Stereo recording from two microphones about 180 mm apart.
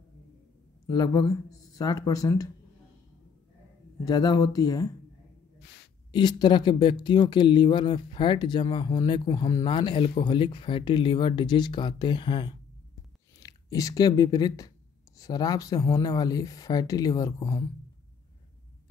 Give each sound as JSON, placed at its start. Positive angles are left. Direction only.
{"t": 0.8, "sound": "speech", "side_deg": 20}
{"t": 4.0, "sound": "speech", "side_deg": 20}
{"t": 6.1, "sound": "speech", "side_deg": 25}